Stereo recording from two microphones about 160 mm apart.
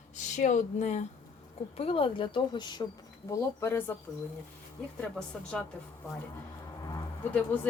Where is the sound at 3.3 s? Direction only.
15° left (ahead or behind).